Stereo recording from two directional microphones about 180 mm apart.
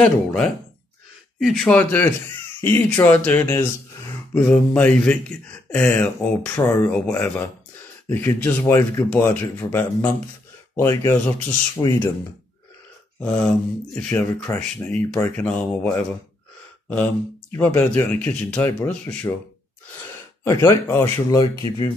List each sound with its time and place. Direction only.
0.0 s speech: 5° left (ahead or behind)
13.2 s speech: 5° left (ahead or behind)
20.4 s speech: 15° left (ahead or behind)